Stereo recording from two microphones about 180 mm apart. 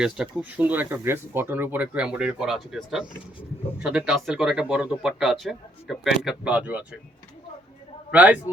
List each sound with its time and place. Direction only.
0.0 s speech: 5° right (ahead or behind)
8.1 s speech: 10° right (ahead or behind)